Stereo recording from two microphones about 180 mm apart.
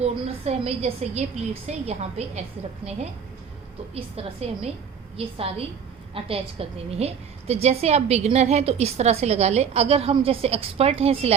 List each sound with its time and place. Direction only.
0.0 s a woman's voice: 35° right (ahead or behind)
3.9 s a woman's voice: 35° right (ahead or behind)